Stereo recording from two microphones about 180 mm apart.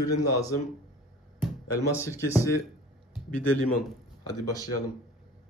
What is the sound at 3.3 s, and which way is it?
Speech, 5° left (ahead or behind).